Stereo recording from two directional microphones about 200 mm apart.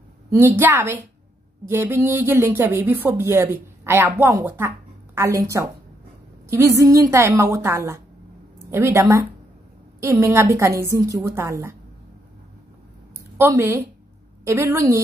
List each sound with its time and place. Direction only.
0.3 s speech: 10° right (ahead or behind)
13.4 s speech: 15° right (ahead or behind)